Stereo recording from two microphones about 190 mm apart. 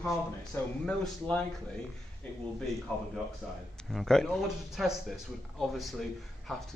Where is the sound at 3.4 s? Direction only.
Centre (ahead or behind).